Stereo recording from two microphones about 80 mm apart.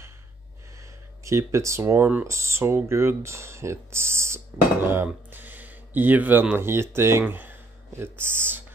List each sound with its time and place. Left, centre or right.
1.2 s speech: right